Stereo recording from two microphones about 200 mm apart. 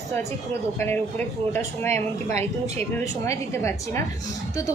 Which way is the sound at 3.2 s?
15° left (ahead or behind).